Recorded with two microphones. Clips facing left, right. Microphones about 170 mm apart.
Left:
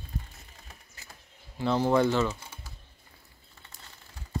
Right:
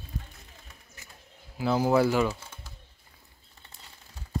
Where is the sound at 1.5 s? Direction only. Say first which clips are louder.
Right 1 dB; 5° right (ahead or behind).